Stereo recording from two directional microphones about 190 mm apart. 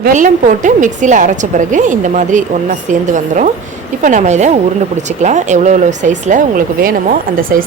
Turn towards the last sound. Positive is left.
turn(degrees=-45)  # may be behind; listen again after turning